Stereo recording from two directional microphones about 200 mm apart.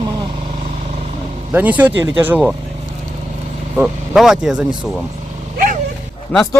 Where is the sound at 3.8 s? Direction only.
5° right (ahead or behind).